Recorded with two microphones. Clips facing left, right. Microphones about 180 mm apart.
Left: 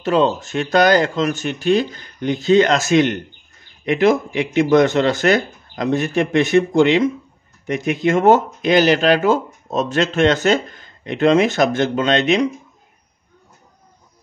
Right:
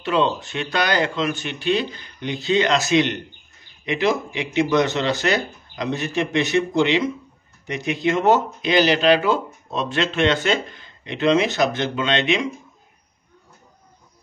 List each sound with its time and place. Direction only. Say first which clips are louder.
0.0 s speech: left 4 dB; 45° left (ahead or behind)